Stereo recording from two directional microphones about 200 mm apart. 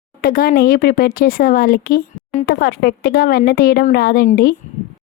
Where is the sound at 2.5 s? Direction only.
50° left (ahead or behind).